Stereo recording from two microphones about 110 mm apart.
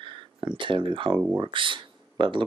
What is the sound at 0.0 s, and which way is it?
Speech, 50° right (ahead or behind).